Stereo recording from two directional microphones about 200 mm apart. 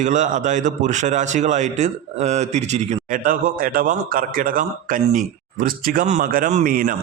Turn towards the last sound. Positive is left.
turn(degrees=-45)  # may be behind; listen again after turning